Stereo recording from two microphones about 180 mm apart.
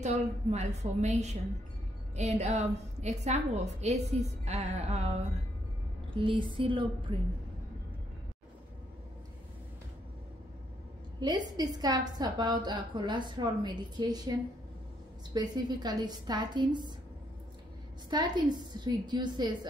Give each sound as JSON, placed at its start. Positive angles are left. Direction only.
{"t": 0.0, "sound": "a woman's voice", "side_deg": -40}
{"t": 6.1, "sound": "a woman's voice", "side_deg": -30}
{"t": 11.1, "sound": "a woman's voice", "side_deg": -25}
{"t": 15.3, "sound": "a woman's voice", "side_deg": -25}
{"t": 18.1, "sound": "a woman's voice", "side_deg": -25}